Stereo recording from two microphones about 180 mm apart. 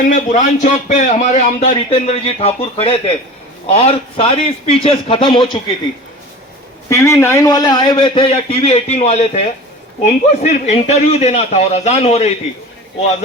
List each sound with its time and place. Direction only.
0.0 s a man's voice: 45° left (ahead or behind); by 5.5 s 25° left (ahead or behind)
6.9 s a man's voice: 15° left (ahead or behind); by 12.3 s 40° left (ahead or behind)